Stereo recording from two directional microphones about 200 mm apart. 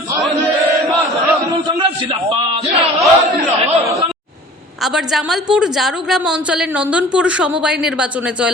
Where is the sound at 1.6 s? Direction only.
25° right (ahead or behind).